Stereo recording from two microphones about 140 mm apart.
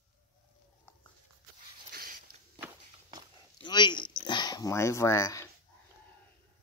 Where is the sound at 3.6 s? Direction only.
30° left (ahead or behind).